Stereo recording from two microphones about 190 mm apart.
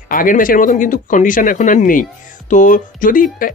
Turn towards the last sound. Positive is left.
turn(degrees=45)  # may be behind; listen again after turning